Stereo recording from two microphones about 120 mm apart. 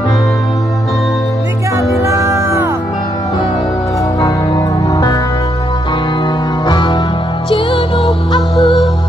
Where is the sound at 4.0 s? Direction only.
25° left (ahead or behind); by 8.4 s 45° left (ahead or behind).